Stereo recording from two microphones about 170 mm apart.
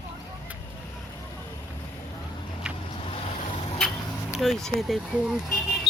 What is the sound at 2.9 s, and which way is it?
Vehicle, 35° left (ahead or behind).